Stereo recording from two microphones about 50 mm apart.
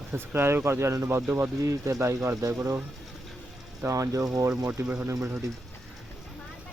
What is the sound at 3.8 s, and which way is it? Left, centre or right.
Speech, right.